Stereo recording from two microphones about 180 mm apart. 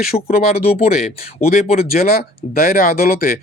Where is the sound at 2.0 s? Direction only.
55° left (ahead or behind).